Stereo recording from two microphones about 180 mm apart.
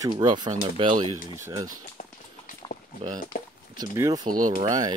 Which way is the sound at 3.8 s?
20° right (ahead or behind).